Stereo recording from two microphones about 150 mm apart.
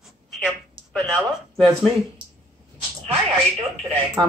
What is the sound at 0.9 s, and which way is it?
Speech, 5° left (ahead or behind).